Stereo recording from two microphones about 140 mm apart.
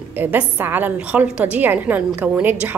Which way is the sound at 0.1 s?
15° right (ahead or behind).